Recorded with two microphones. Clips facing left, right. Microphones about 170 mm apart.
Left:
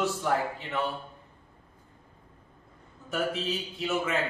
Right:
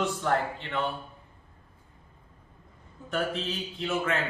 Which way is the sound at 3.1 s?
5° left (ahead or behind).